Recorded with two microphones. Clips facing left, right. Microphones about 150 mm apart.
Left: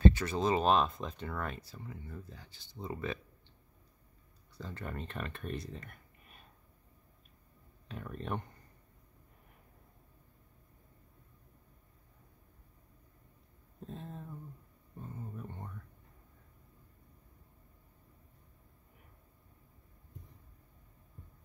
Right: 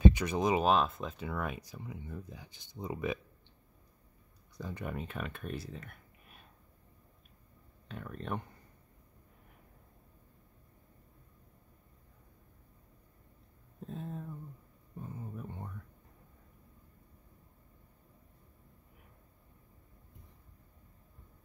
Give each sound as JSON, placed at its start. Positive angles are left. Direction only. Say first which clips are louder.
{"t": 0.0, "sound": "speech", "louder": "right 1 dB", "side_deg": -15}
{"t": 0.7, "sound": "speech", "louder": "even", "side_deg": 0}
{"t": 4.6, "sound": "speech", "louder": "right 3 dB", "side_deg": -15}
{"t": 7.9, "sound": "speech", "louder": "even", "side_deg": 0}
{"t": 13.8, "sound": "speech", "louder": "right 3 dB", "side_deg": 0}